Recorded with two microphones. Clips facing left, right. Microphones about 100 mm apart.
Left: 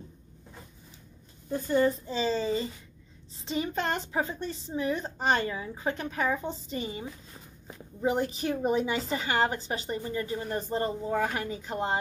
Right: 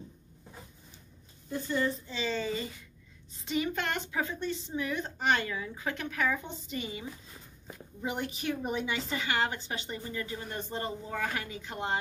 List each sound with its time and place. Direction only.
1.5 s a woman's voice: 40° left (ahead or behind)